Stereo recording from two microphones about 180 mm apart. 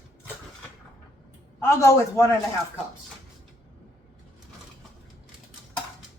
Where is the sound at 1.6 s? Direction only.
15° left (ahead or behind).